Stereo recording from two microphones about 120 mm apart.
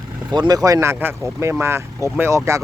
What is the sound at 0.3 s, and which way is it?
Speech, 35° right (ahead or behind).